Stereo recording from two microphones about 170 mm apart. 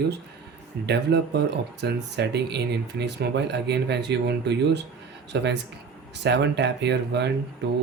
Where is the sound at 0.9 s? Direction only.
80° right.